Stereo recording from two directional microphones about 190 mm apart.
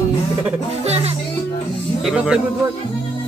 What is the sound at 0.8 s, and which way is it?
Speech, 35° right (ahead or behind).